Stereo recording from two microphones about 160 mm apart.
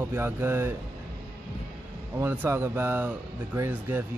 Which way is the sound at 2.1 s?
10° right (ahead or behind).